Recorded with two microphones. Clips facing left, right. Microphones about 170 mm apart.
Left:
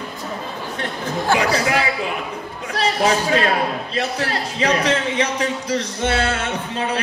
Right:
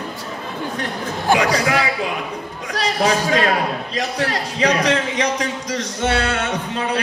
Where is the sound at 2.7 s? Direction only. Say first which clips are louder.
Left 1 dB; 35° right (ahead or behind).